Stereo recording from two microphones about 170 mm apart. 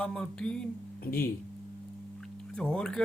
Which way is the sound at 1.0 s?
60° left (ahead or behind).